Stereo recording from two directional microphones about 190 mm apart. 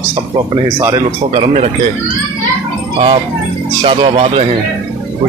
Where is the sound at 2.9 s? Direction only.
30° right (ahead or behind).